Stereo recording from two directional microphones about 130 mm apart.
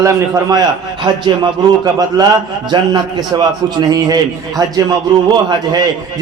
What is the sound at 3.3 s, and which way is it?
A man's voice, 30° right (ahead or behind).